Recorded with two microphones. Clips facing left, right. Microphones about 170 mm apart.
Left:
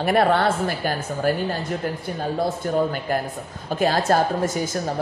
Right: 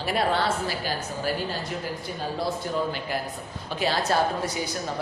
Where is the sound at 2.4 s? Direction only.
50° left (ahead or behind).